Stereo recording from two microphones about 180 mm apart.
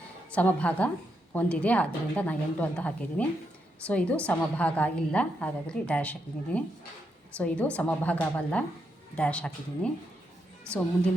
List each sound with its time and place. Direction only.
0.3 s a woman's voice: 5° left (ahead or behind)